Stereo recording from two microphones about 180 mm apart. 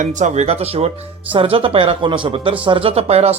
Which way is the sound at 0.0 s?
40° right (ahead or behind).